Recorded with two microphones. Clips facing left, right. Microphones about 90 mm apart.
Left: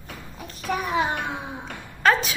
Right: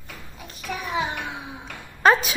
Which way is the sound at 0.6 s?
50° left (ahead or behind).